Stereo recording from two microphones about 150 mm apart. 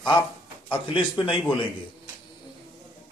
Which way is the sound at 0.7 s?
35° left (ahead or behind).